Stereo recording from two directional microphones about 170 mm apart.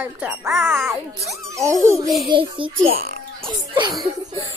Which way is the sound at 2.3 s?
30° right (ahead or behind).